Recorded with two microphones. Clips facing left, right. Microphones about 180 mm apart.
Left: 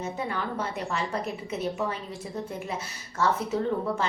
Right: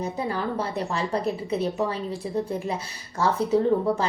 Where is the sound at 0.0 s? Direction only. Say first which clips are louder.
Right 4 dB; 35° right (ahead or behind).